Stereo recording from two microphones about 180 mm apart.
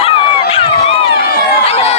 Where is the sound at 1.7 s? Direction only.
35° left (ahead or behind).